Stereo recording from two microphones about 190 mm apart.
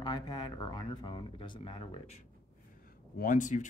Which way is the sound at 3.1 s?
45° left (ahead or behind).